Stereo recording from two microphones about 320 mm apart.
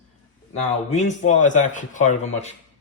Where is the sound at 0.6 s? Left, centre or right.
Left.